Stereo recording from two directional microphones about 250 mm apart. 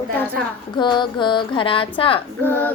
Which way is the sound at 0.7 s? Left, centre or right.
Centre.